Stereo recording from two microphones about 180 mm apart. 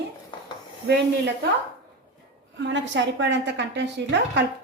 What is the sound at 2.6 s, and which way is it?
A woman's voice, 80° right.